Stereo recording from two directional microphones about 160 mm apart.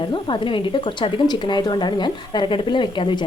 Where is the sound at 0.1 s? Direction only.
30° left (ahead or behind).